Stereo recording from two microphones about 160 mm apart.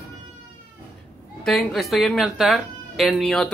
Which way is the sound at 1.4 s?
Centre (ahead or behind).